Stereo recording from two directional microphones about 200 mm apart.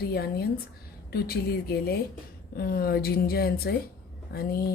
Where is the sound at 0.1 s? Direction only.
50° left (ahead or behind).